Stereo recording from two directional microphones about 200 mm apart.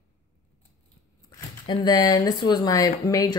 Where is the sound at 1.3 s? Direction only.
20° left (ahead or behind).